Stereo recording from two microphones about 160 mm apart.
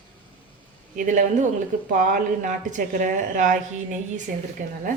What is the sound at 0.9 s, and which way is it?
Speech, 55° right (ahead or behind).